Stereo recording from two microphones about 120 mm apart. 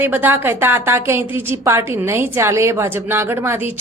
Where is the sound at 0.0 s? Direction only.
15° right (ahead or behind).